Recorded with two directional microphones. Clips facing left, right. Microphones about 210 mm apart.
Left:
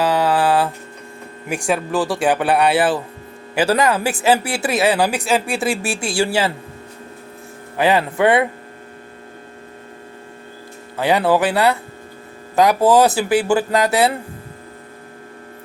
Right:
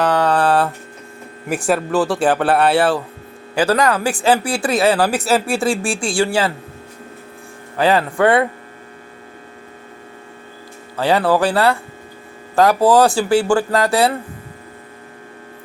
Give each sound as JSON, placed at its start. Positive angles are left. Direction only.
{"t": 0.0, "sound": "mantra", "side_deg": 5}
{"t": 1.5, "sound": "speech", "side_deg": 0}
{"t": 3.8, "sound": "speech", "side_deg": 20}
{"t": 5.1, "sound": "speech", "side_deg": 0}
{"t": 7.8, "sound": "speech", "side_deg": 20}
{"t": 10.9, "sound": "speech", "side_deg": 20}